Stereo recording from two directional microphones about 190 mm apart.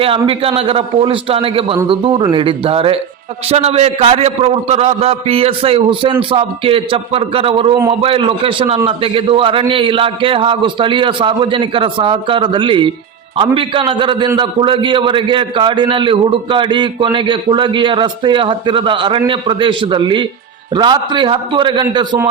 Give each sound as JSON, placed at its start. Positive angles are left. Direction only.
{"t": 0.0, "sound": "a man's voice", "side_deg": -30}